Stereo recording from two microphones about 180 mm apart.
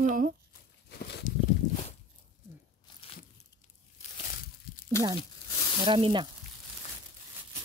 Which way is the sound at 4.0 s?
40° left (ahead or behind).